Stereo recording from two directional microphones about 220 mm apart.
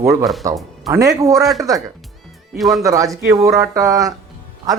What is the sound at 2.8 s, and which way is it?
A man's voice, 15° right (ahead or behind).